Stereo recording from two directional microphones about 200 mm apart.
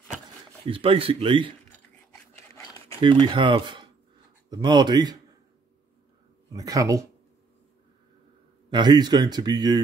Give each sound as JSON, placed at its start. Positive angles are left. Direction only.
{"t": 0.7, "sound": "speech", "side_deg": -25}
{"t": 2.5, "sound": "a sound", "side_deg": 15}
{"t": 3.0, "sound": "speech", "side_deg": -25}
{"t": 6.5, "sound": "speech", "side_deg": -15}
{"t": 8.6, "sound": "speech", "side_deg": -20}